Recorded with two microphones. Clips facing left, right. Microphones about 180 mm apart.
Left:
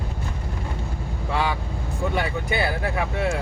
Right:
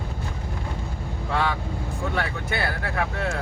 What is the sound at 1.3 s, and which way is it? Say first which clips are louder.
Speech: even; 15° left (ahead or behind).